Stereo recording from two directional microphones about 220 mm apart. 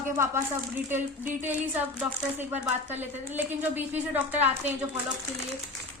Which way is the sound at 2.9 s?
10° right (ahead or behind).